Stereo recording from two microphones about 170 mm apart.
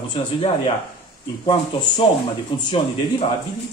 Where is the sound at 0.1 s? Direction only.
30° left (ahead or behind).